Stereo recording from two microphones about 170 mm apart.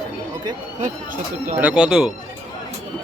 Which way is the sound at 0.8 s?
50° right (ahead or behind).